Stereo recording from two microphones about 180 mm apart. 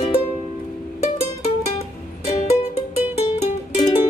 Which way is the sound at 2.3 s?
35° left (ahead or behind).